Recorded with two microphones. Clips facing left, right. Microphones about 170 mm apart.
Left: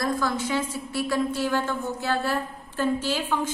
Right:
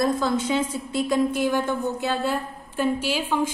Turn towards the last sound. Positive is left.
turn(degrees=-10)  # may be behind; listen again after turning